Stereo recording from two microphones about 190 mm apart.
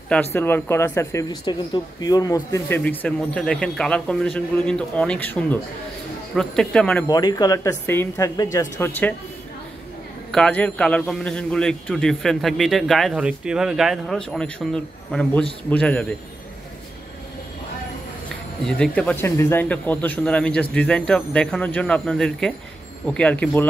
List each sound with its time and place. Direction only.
0.1 s a man's voice: 10° left (ahead or behind)
7.1 s speech: 20° left (ahead or behind)
10.3 s a man's voice: 5° left (ahead or behind)
18.7 s a man's voice: 5° left (ahead or behind)